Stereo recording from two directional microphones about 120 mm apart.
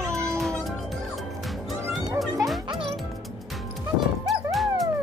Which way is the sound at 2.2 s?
Centre (ahead or behind).